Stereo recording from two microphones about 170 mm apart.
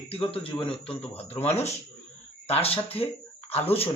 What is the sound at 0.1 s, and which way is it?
Speech, 35° left (ahead or behind).